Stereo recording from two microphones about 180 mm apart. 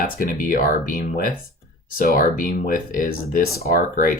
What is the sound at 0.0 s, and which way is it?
Speech, 50° left (ahead or behind).